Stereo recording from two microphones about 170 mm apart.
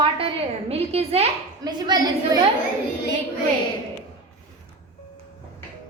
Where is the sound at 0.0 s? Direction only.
30° right (ahead or behind).